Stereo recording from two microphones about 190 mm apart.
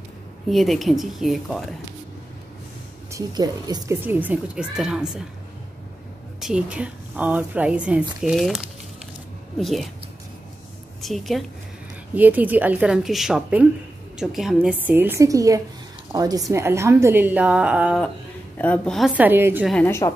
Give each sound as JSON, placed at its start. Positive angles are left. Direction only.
{"t": 0.5, "sound": "a woman's voice", "side_deg": 0}
{"t": 3.1, "sound": "speech", "side_deg": -20}
{"t": 6.4, "sound": "a woman's voice", "side_deg": -5}
{"t": 11.0, "sound": "a woman's voice", "side_deg": 0}
{"t": 18.6, "sound": "a woman's voice", "side_deg": 5}
{"t": 19.7, "sound": "a woman's voice", "side_deg": 10}